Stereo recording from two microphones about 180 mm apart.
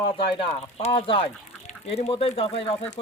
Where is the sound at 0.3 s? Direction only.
30° left (ahead or behind).